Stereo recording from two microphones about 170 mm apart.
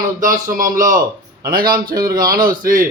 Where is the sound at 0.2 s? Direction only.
50° right (ahead or behind).